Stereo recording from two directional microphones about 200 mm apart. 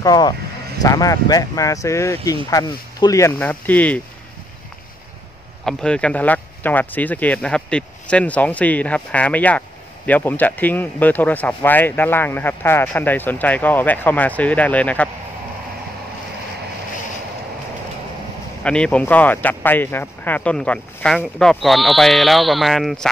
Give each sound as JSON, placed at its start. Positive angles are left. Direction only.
{"t": 0.0, "sound": "speech", "side_deg": 20}
{"t": 5.7, "sound": "speech", "side_deg": 5}
{"t": 18.6, "sound": "speech", "side_deg": 5}